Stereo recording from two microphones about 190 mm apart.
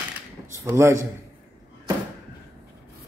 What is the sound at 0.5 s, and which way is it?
Speech, 15° right (ahead or behind).